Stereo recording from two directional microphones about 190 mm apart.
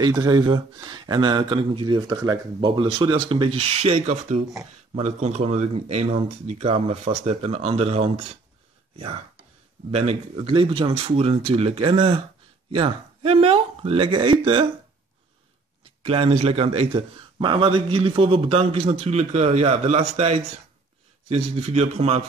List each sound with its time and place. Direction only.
0.0 s a man's voice: 20° right (ahead or behind)
16.0 s a man's voice: 30° right (ahead or behind)